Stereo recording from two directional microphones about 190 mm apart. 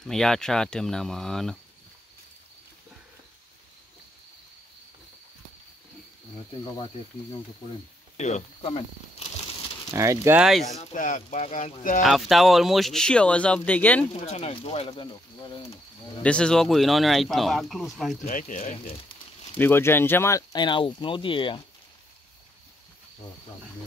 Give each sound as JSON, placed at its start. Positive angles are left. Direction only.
{"t": 0.0, "sound": "speech", "side_deg": 0}
{"t": 8.2, "sound": "speech", "side_deg": 40}
{"t": 9.8, "sound": "speech", "side_deg": -15}
{"t": 10.6, "sound": "speech", "side_deg": 35}
{"t": 12.0, "sound": "speech", "side_deg": 0}
{"t": 14.2, "sound": "speech", "side_deg": 35}
{"t": 16.2, "sound": "speech", "side_deg": 5}
{"t": 18.2, "sound": "speech", "side_deg": 40}
{"t": 19.6, "sound": "speech", "side_deg": 10}